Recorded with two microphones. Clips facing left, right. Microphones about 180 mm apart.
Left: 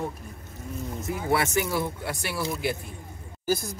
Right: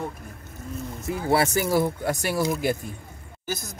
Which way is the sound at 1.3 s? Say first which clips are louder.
Right 4 dB; 35° right (ahead or behind).